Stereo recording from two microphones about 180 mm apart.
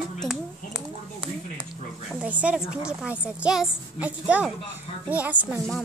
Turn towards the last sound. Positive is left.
turn(degrees=0)  # may be behind; listen again after turning